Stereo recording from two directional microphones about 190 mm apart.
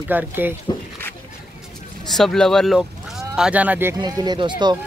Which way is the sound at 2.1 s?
Centre (ahead or behind).